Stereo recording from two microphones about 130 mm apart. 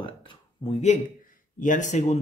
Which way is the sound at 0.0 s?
40° left (ahead or behind).